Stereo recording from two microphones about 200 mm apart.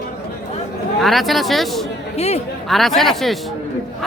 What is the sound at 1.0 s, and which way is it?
Speech, centre (ahead or behind).